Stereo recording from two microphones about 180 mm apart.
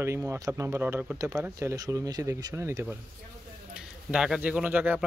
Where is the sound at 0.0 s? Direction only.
15° right (ahead or behind).